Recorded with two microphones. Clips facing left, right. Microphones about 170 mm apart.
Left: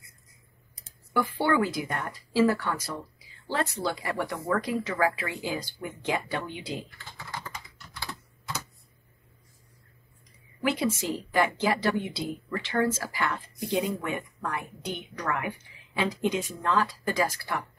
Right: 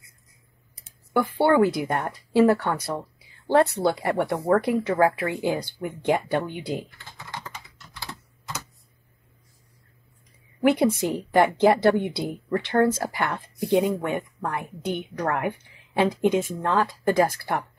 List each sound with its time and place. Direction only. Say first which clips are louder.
1.5 s speech: right 8 dB; 60° right (ahead or behind)
10.6 s speech: right 7 dB; 60° right (ahead or behind)